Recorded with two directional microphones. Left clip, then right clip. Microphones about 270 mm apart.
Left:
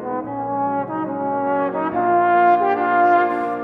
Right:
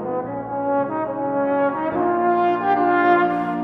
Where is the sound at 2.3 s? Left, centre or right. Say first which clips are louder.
Left 3 dB; left.